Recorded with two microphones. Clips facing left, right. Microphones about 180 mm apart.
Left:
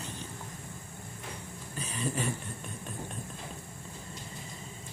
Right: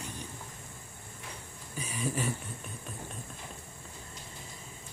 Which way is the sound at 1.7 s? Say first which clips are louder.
Even; 10° right (ahead or behind).